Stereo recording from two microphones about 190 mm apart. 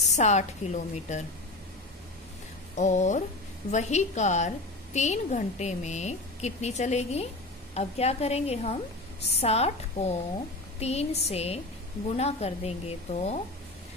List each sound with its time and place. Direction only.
0.0 s a woman's voice: 35° left (ahead or behind)
2.7 s a woman's voice: 40° left (ahead or behind)